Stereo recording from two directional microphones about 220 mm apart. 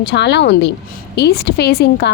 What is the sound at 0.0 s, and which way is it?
A woman's voice, 50° left (ahead or behind).